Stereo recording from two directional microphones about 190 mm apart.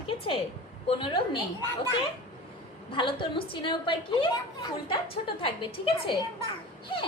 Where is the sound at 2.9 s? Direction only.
25° left (ahead or behind).